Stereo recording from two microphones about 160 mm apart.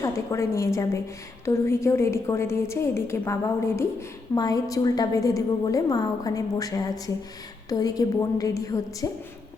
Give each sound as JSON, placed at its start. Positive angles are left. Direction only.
{"t": 0.0, "sound": "a woman's voice", "side_deg": 20}